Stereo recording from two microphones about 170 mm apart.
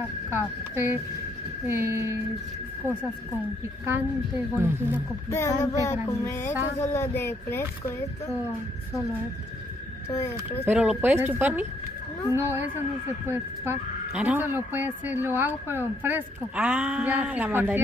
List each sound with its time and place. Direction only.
0.3 s speech: 15° right (ahead or behind)
4.6 s speech: 10° right (ahead or behind)
5.3 s a sound: 15° left (ahead or behind)
10.6 s speech: 5° right (ahead or behind)